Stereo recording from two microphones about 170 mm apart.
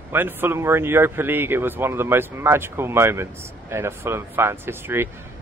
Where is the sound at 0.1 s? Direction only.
10° right (ahead or behind).